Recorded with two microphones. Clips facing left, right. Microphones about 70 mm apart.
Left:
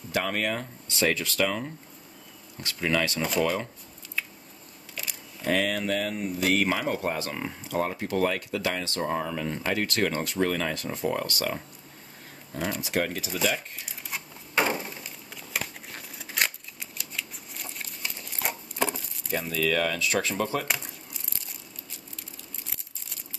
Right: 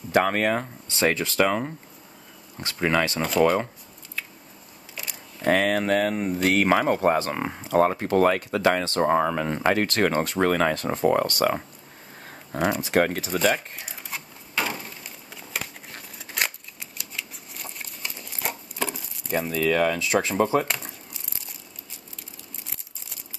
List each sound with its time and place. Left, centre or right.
0.1 s speech: right
5.4 s speech: right
12.8 s speech: right
14.7 s a sound: centre
19.5 s speech: right